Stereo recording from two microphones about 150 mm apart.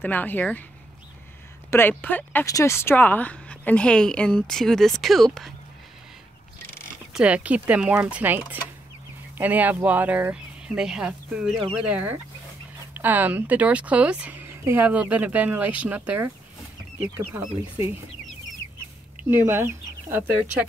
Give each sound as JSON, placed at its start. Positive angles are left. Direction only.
{"t": 0.0, "sound": "speech", "side_deg": 10}
{"t": 1.7, "sound": "speech", "side_deg": 15}
{"t": 7.2, "sound": "speech", "side_deg": -10}
{"t": 17.3, "sound": "speech", "side_deg": -10}
{"t": 19.2, "sound": "speech", "side_deg": -15}